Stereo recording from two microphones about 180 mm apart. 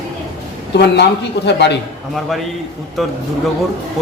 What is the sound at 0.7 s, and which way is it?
A man's voice, 70° left (ahead or behind).